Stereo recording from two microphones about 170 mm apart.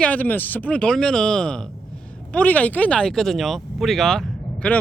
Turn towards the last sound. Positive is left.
turn(degrees=5)  # may be behind; listen again after turning